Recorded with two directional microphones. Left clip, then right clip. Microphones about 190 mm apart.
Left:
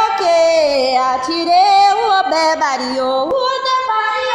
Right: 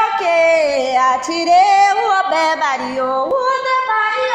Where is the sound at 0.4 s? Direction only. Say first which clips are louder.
Right 1 dB; 50° left (ahead or behind).